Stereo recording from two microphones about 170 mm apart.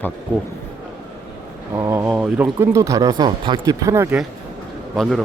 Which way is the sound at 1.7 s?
15° right (ahead or behind).